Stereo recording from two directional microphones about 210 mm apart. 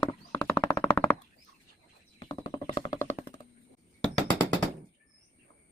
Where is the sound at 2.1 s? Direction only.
20° left (ahead or behind).